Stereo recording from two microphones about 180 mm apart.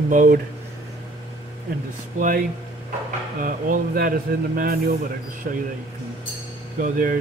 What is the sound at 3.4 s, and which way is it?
Speech, 50° right (ahead or behind).